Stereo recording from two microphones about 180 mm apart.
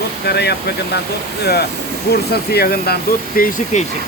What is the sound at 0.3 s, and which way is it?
Speech, 65° left (ahead or behind).